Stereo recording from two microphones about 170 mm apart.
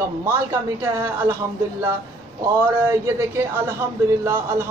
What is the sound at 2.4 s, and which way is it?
Speech, 15° right (ahead or behind).